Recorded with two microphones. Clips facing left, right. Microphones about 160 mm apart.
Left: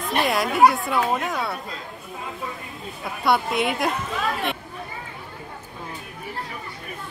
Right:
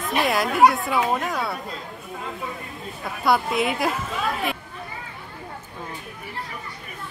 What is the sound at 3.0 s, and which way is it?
Speech, centre (ahead or behind).